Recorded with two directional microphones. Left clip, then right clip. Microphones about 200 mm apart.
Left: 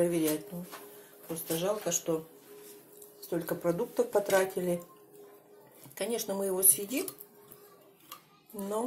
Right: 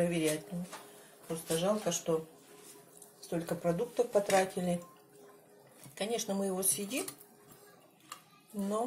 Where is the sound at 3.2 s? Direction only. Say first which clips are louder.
Left 3 dB; 10° left (ahead or behind).